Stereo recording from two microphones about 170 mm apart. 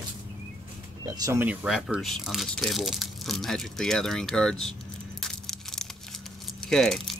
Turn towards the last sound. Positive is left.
turn(degrees=0)  # may be behind; listen again after turning